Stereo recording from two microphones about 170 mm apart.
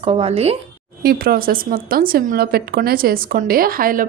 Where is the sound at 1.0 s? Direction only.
60° right (ahead or behind).